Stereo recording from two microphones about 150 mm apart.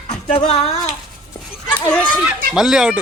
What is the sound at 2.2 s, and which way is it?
Speech, 5° right (ahead or behind).